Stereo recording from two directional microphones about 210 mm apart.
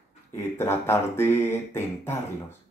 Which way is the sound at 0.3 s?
10° left (ahead or behind).